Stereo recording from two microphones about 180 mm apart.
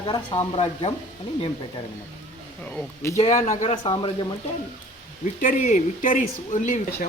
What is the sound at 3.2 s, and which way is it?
Speech, 40° left (ahead or behind).